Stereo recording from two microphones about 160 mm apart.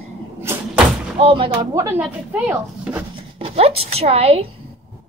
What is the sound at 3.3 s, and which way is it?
A woman's voice, 35° right (ahead or behind).